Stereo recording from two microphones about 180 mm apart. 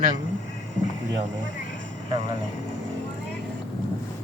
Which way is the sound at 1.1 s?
90° right.